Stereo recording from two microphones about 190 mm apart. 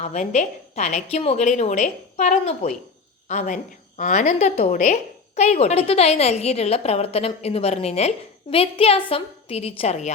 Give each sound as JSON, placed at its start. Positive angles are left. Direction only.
{"t": 0.0, "sound": "a woman's voice", "side_deg": 35}